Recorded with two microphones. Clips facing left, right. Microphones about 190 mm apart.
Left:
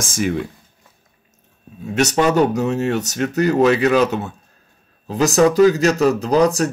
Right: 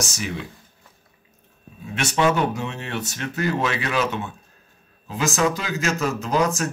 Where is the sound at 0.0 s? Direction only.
50° left (ahead or behind).